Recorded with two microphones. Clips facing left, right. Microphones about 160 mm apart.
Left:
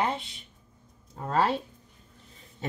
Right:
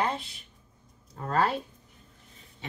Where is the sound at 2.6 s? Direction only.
40° left (ahead or behind).